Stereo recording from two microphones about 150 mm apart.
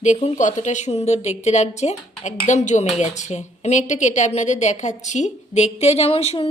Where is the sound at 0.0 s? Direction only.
50° left (ahead or behind).